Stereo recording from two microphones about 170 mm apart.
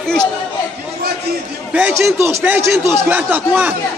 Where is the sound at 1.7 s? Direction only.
10° right (ahead or behind).